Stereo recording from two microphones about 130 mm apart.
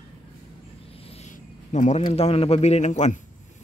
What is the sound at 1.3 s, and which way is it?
A man's voice, 70° left (ahead or behind).